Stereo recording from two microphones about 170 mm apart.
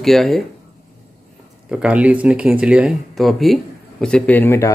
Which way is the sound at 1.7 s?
5° right (ahead or behind).